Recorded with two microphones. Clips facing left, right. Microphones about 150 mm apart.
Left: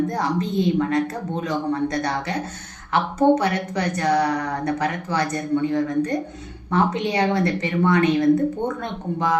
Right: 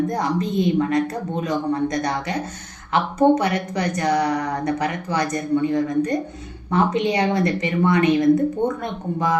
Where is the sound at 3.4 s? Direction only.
15° right (ahead or behind).